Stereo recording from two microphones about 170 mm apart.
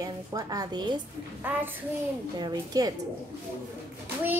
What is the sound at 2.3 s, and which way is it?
Speech, 25° right (ahead or behind).